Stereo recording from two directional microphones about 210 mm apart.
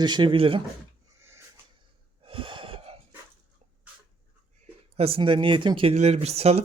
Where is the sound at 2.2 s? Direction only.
25° right (ahead or behind).